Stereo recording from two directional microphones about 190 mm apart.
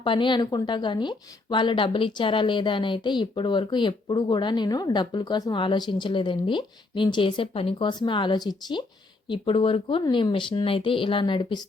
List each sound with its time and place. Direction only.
0.0 s speech: 25° left (ahead or behind)